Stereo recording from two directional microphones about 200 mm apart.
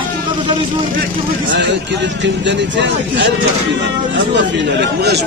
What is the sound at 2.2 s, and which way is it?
Speech, 65° right (ahead or behind).